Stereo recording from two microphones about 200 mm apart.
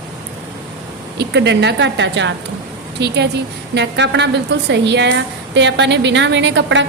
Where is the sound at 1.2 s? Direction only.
55° right (ahead or behind).